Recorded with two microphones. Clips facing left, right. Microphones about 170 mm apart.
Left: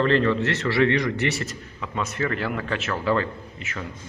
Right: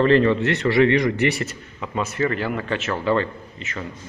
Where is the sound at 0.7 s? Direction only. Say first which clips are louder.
Right 6 dB; 20° right (ahead or behind).